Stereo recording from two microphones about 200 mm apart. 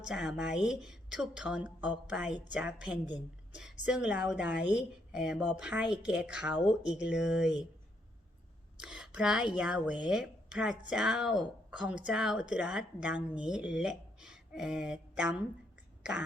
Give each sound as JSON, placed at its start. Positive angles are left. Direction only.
{"t": 0.0, "sound": "a woman's voice", "side_deg": -5}
{"t": 8.8, "sound": "a woman's voice", "side_deg": -5}